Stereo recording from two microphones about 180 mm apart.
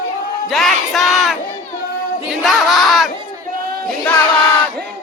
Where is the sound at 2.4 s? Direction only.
Centre (ahead or behind).